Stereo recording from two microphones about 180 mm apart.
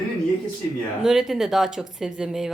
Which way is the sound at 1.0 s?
Centre (ahead or behind).